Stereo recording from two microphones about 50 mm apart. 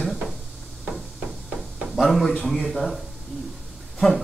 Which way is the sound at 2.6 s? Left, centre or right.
Centre.